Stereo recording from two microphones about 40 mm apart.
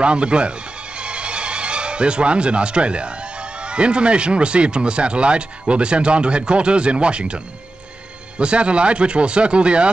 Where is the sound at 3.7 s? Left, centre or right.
Right.